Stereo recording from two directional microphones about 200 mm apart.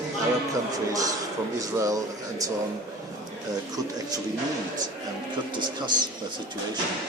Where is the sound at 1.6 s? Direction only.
15° right (ahead or behind).